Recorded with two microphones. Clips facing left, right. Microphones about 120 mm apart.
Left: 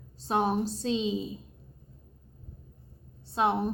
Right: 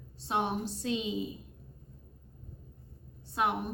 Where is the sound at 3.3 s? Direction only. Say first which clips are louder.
Left 4 dB; 30° left (ahead or behind).